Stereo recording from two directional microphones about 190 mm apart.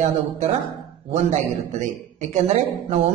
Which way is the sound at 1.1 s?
40° right (ahead or behind).